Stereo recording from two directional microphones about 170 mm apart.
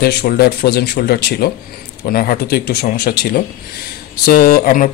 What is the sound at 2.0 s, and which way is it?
A man's voice, 60° left (ahead or behind).